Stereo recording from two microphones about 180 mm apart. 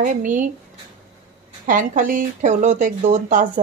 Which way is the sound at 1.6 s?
50° right (ahead or behind).